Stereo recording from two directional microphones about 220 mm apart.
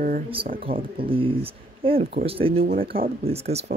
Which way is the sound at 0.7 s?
25° right (ahead or behind).